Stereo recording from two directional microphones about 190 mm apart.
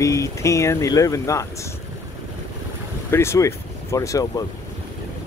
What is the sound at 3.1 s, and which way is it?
Speech, 15° left (ahead or behind).